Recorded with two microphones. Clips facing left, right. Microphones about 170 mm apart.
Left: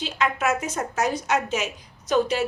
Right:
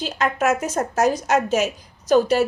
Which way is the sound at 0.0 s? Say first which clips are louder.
Right 3 dB; 45° right (ahead or behind).